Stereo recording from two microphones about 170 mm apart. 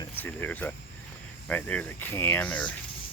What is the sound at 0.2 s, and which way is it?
Speech, 10° left (ahead or behind).